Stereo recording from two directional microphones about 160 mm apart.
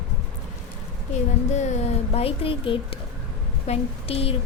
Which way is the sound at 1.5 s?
45° left (ahead or behind).